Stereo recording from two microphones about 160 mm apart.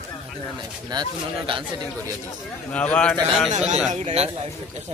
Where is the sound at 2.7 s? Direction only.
10° left (ahead or behind).